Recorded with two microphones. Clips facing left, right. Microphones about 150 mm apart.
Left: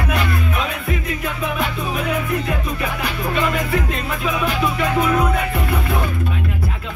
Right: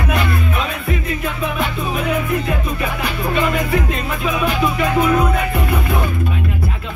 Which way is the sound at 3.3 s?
10° right (ahead or behind).